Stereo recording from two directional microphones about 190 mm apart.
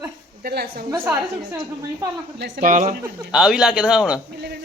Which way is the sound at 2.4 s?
45° right (ahead or behind).